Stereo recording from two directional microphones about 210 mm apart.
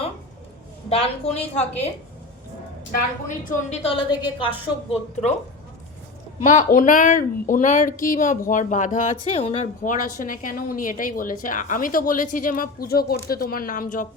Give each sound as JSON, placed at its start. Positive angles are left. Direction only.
{"t": 0.9, "sound": "a woman's voice", "side_deg": 25}
{"t": 3.5, "sound": "a woman's voice", "side_deg": 30}
{"t": 6.4, "sound": "speech", "side_deg": 40}